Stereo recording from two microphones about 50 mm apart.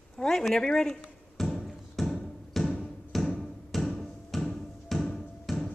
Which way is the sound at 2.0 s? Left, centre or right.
Centre.